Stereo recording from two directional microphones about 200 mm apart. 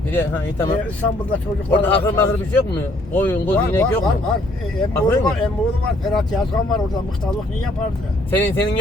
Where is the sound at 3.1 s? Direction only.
10° left (ahead or behind).